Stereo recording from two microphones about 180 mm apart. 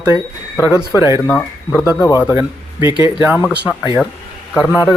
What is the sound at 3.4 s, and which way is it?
Speech, centre (ahead or behind).